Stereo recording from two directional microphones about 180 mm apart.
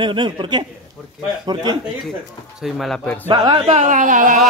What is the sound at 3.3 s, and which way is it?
Speech, 20° right (ahead or behind).